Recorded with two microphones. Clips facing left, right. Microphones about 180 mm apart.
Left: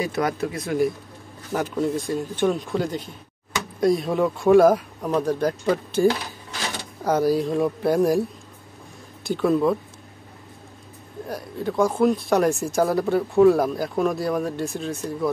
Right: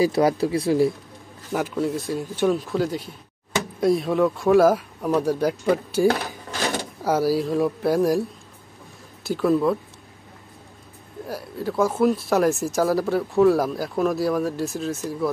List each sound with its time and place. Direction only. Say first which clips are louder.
0.0 s speech: right 5 dB; 30° right (ahead or behind)
1.5 s speech: even; 5° right (ahead or behind)
11.2 s speech: even; 5° right (ahead or behind)